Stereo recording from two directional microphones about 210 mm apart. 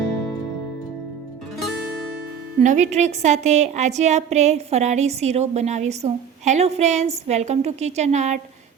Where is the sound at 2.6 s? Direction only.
35° right (ahead or behind).